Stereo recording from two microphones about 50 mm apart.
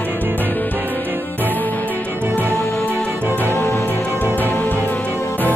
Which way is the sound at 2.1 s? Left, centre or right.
Right.